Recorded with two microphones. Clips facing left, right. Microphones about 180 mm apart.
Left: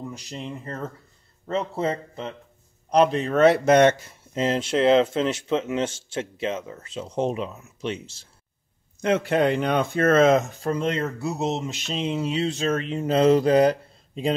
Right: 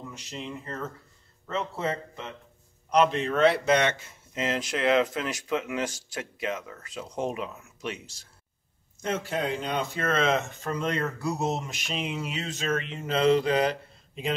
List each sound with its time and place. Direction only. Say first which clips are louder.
0.1 s speech: left 3 dB; 35° left (ahead or behind)
9.0 s speech: left 8 dB; 70° left (ahead or behind); by 14.3 s 35° left (ahead or behind)